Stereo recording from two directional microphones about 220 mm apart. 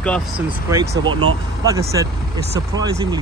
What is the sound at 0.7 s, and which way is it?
Speech, 15° right (ahead or behind).